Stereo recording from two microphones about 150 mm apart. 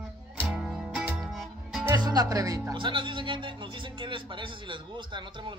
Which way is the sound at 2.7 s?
30° right (ahead or behind).